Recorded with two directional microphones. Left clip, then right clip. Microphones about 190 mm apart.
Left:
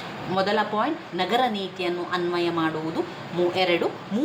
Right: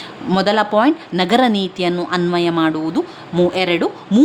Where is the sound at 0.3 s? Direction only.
60° right (ahead or behind).